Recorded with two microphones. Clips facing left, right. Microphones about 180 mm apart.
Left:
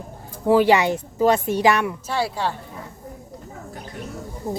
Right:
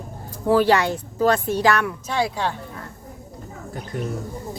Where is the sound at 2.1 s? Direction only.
5° left (ahead or behind).